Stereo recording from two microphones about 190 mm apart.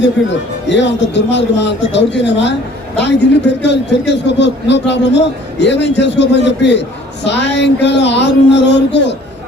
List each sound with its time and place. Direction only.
0.7 s a man's voice: 65° left (ahead or behind)
3.6 s a man's voice: 65° left (ahead or behind)